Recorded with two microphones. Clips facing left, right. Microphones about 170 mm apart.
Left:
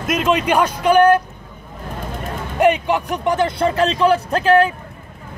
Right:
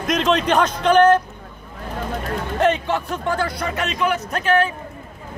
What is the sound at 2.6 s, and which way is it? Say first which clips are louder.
Speech: left 4 dB; 15° left (ahead or behind).